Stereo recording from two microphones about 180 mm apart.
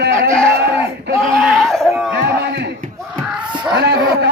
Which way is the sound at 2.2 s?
65° right (ahead or behind).